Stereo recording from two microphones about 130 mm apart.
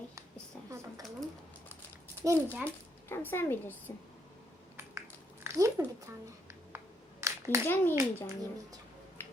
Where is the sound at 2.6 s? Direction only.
20° left (ahead or behind).